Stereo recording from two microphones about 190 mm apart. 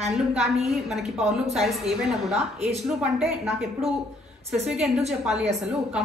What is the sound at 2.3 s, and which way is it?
Speech, 35° right (ahead or behind).